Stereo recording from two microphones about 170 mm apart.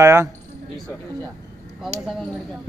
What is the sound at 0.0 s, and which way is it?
Speech, 15° right (ahead or behind).